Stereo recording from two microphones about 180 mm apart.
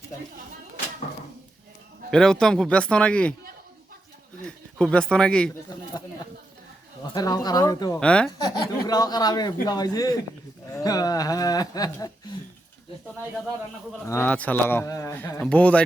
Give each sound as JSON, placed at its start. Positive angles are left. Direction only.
{"t": 2.0, "sound": "speech", "side_deg": 5}
{"t": 4.4, "sound": "speech", "side_deg": 5}
{"t": 7.1, "sound": "speech", "side_deg": 20}
{"t": 7.9, "sound": "speech", "side_deg": 5}
{"t": 8.5, "sound": "speech", "side_deg": 25}
{"t": 14.1, "sound": "speech", "side_deg": 10}